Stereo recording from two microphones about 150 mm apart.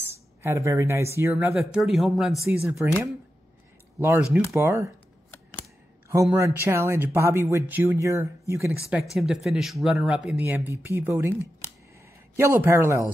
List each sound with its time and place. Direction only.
0.1 s speech: 15° right (ahead or behind)
1.5 s speech: centre (ahead or behind)
4.0 s speech: 15° right (ahead or behind)
6.3 s speech: 15° right (ahead or behind)
9.1 s speech: centre (ahead or behind)
10.4 s speech: 15° right (ahead or behind)
12.4 s speech: 15° right (ahead or behind)